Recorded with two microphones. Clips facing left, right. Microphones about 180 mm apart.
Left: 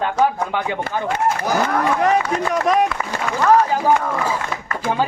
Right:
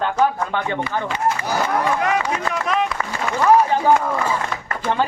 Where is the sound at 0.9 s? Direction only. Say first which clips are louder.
Left 2 dB; 50° left (ahead or behind).